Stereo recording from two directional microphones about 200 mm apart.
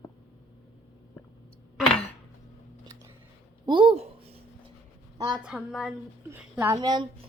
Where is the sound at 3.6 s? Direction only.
25° right (ahead or behind).